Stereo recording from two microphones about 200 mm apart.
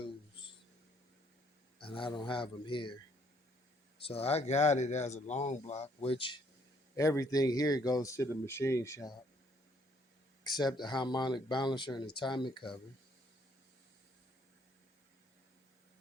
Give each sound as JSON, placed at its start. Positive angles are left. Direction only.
{"t": 0.0, "sound": "a sound", "side_deg": 25}
{"t": 1.8, "sound": "speech", "side_deg": 25}
{"t": 4.0, "sound": "speech", "side_deg": 30}
{"t": 10.5, "sound": "speech", "side_deg": 20}